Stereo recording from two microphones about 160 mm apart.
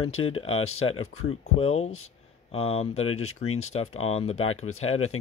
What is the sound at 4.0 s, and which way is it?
Speech, 40° left (ahead or behind).